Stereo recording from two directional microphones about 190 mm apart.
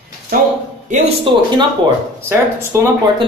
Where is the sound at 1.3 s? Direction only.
25° right (ahead or behind).